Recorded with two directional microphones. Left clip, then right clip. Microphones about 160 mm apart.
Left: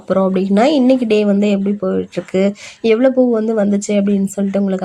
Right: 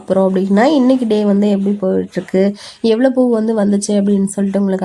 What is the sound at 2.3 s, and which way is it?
Speech, 35° left (ahead or behind).